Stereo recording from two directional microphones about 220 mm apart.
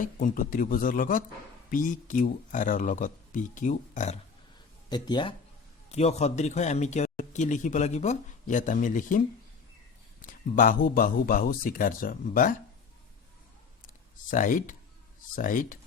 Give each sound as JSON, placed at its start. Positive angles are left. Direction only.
{"t": 0.0, "sound": "speech", "side_deg": 40}
{"t": 4.9, "sound": "speech", "side_deg": 20}
{"t": 14.3, "sound": "speech", "side_deg": 35}